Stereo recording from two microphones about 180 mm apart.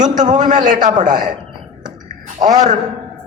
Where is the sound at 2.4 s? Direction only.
40° right (ahead or behind).